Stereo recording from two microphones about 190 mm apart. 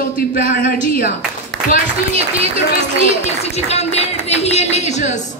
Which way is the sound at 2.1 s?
35° right (ahead or behind).